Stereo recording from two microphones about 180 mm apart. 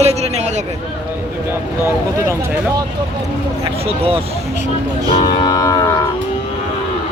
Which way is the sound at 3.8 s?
35° right (ahead or behind).